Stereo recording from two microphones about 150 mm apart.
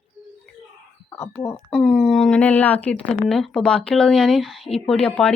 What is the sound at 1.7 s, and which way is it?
A woman's voice, 5° left (ahead or behind).